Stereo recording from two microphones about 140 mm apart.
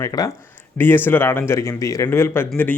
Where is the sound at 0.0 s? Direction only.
25° left (ahead or behind).